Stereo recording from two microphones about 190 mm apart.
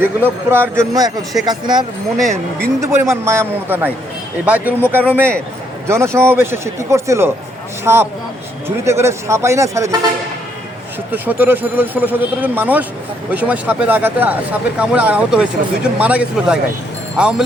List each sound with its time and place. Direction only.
0.0 s speech: 10° right (ahead or behind)
11.1 s speech: 10° right (ahead or behind)